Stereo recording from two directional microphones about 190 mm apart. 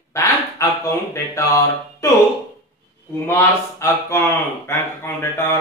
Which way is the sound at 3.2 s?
15° left (ahead or behind).